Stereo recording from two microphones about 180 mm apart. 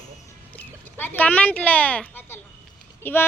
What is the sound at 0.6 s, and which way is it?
A woman's voice, 10° left (ahead or behind).